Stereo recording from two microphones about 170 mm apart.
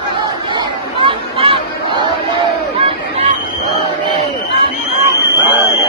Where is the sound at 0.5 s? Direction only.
30° right (ahead or behind).